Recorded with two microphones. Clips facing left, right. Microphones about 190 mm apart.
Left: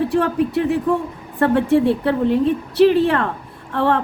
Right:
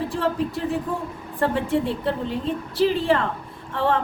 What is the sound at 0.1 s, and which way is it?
A woman's voice, 65° left (ahead or behind).